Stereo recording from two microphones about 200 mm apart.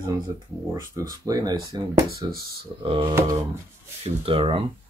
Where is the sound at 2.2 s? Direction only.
20° right (ahead or behind).